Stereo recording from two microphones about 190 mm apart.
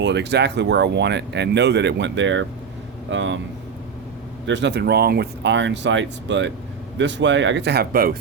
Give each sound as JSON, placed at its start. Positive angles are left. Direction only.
{"t": 0.0, "sound": "speech", "side_deg": -65}
{"t": 4.4, "sound": "speech", "side_deg": -70}